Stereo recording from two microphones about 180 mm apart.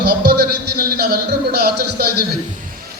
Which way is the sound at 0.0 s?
60° right (ahead or behind).